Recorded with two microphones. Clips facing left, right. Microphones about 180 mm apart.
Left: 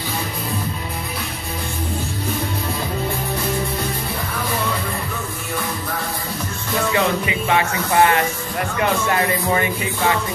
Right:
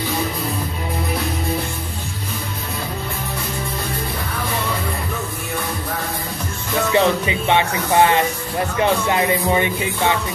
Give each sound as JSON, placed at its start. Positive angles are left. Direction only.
{"t": 6.9, "sound": "speech", "side_deg": -25}
{"t": 9.0, "sound": "music", "side_deg": -20}